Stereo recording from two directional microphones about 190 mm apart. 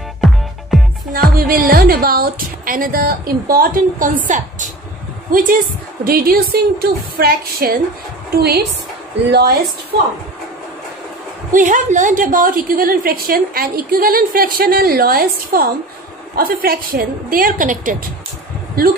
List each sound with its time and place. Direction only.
0.2 s music: centre (ahead or behind)
1.1 s a woman's voice: 50° right (ahead or behind)
6.0 s a woman's voice: 50° right (ahead or behind)
11.5 s a woman's voice: 45° right (ahead or behind)